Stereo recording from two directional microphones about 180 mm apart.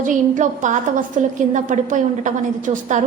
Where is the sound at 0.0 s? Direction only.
45° right (ahead or behind).